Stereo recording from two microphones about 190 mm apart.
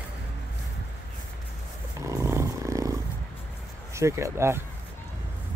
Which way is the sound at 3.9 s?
15° right (ahead or behind).